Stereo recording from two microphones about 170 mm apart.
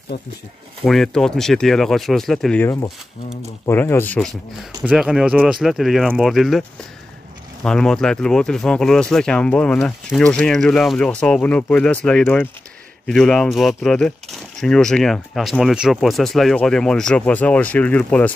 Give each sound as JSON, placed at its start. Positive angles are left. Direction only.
{"t": 0.1, "sound": "speech", "side_deg": 70}
{"t": 0.8, "sound": "speech", "side_deg": 0}
{"t": 7.6, "sound": "speech", "side_deg": 5}